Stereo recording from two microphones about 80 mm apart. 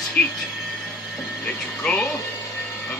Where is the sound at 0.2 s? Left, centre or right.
Centre.